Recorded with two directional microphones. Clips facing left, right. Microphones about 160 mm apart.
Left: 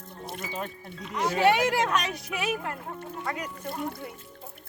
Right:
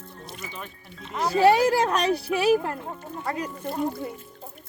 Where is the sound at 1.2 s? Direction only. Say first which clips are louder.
Right 4 dB; 35° right (ahead or behind).